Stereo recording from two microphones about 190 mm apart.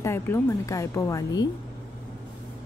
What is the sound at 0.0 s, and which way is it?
Speech, 15° left (ahead or behind).